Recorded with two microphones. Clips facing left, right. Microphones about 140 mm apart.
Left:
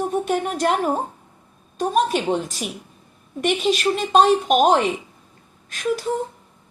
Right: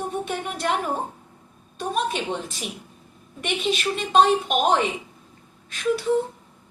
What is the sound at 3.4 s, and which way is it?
A woman's voice, 40° left (ahead or behind).